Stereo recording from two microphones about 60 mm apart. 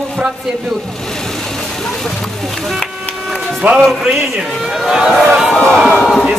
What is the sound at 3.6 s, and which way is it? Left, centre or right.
Music, right.